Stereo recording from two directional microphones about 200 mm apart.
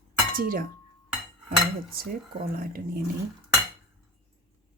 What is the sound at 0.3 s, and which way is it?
Speech, 45° right (ahead or behind).